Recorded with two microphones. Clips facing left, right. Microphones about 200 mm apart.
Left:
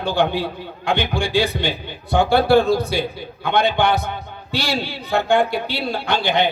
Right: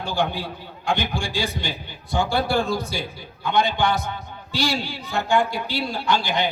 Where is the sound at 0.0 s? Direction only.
60° left (ahead or behind).